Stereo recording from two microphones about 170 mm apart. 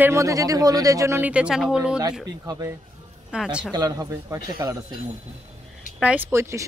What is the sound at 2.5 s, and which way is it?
Speech, 20° right (ahead or behind).